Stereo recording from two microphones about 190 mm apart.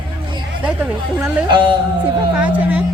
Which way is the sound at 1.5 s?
25° right (ahead or behind).